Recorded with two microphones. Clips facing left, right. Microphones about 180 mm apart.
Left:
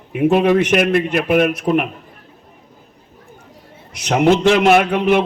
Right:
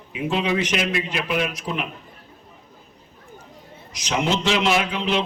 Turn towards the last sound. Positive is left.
turn(degrees=55)  # may be behind; listen again after turning